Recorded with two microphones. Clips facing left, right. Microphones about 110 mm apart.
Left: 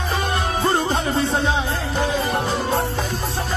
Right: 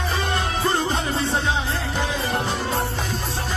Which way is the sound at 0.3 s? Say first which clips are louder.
Left 3 dB; 25° left (ahead or behind).